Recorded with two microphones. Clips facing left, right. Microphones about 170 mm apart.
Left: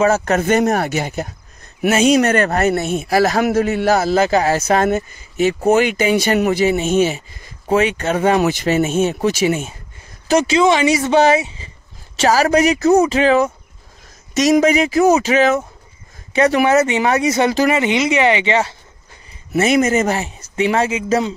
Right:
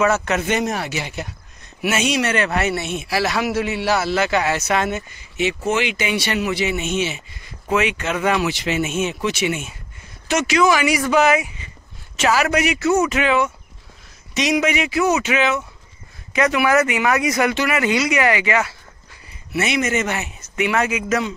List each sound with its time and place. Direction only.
0.0 s speech: 40° left (ahead or behind)
19.5 s speech: 40° left (ahead or behind)